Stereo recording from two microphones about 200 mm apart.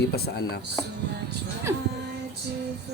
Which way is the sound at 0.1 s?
55° left (ahead or behind).